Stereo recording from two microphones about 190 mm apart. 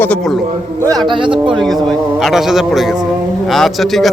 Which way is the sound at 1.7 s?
Centre (ahead or behind).